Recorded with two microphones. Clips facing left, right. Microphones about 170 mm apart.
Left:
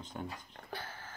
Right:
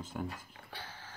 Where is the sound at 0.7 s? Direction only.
50° left (ahead or behind).